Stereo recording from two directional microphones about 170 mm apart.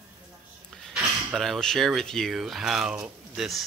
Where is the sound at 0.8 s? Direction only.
Centre (ahead or behind).